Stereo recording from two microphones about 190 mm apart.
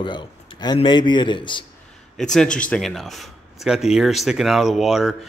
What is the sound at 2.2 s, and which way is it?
Speech, 5° left (ahead or behind).